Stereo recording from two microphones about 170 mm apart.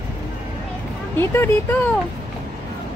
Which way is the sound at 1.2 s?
15° left (ahead or behind).